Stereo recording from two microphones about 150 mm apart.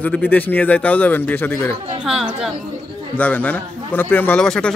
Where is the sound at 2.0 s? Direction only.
5° right (ahead or behind).